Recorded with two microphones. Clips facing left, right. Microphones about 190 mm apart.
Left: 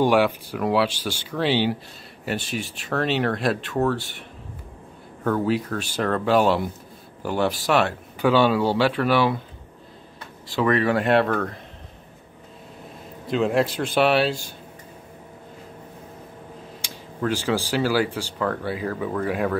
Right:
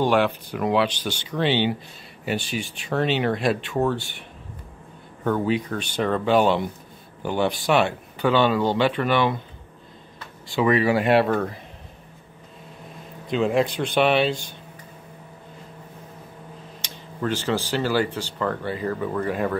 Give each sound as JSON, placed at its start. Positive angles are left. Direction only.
{"t": 0.0, "sound": "speech", "side_deg": 10}
{"t": 5.2, "sound": "speech", "side_deg": 0}
{"t": 10.5, "sound": "speech", "side_deg": 0}
{"t": 13.3, "sound": "speech", "side_deg": 0}
{"t": 17.2, "sound": "speech", "side_deg": 10}